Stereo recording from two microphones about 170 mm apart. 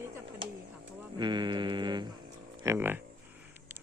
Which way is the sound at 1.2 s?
25° right (ahead or behind).